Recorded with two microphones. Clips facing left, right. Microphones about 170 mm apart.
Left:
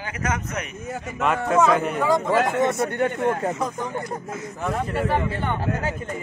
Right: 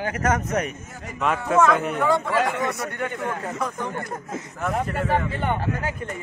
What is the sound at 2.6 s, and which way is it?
Speech, 25° left (ahead or behind).